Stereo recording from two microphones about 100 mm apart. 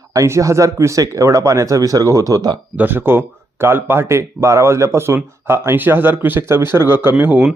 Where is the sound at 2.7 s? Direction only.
20° right (ahead or behind).